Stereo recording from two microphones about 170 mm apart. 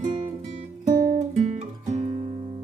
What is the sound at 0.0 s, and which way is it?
Guitar, 45° right (ahead or behind).